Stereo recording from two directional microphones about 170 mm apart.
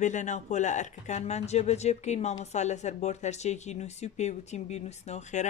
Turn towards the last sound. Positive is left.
turn(degrees=45)  # may be behind; listen again after turning